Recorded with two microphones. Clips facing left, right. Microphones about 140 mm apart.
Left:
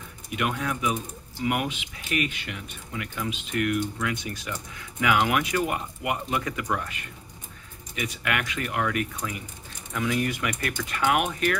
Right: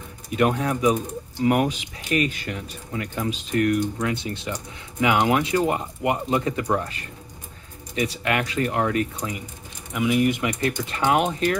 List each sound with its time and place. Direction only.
0.3 s speech: 35° right (ahead or behind)